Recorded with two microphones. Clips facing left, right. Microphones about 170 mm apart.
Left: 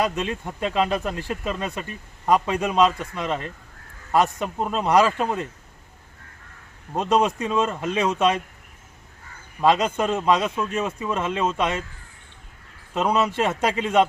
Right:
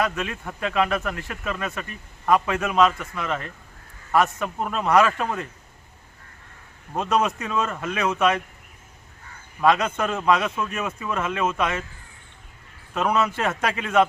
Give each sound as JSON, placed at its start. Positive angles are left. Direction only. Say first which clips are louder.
{"t": 0.0, "sound": "speech", "louder": "left 2 dB", "side_deg": 25}
{"t": 6.9, "sound": "speech", "louder": "left 2 dB", "side_deg": 20}
{"t": 9.6, "sound": "speech", "louder": "left 1 dB", "side_deg": 25}
{"t": 12.9, "sound": "speech", "louder": "left 1 dB", "side_deg": 25}